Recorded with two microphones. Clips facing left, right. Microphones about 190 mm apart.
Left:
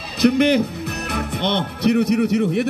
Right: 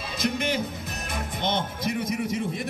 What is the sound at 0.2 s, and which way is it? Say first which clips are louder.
Speech: left 12 dB; 65° left (ahead or behind).